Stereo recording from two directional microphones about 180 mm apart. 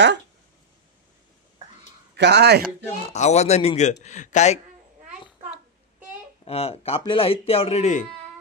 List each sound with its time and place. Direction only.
2.1 s speech: 70° right (ahead or behind)
3.1 s speech: 40° left (ahead or behind)
6.4 s speech: 35° left (ahead or behind)